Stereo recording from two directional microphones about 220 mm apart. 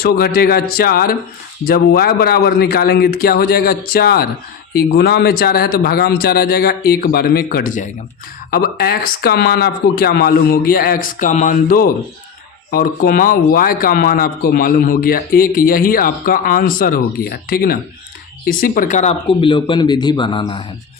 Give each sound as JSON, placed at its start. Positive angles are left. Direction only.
{"t": 0.0, "sound": "speech", "side_deg": 45}
{"t": 19.3, "sound": "speech", "side_deg": 20}